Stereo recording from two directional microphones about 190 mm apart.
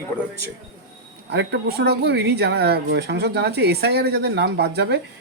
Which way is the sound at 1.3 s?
65° right (ahead or behind).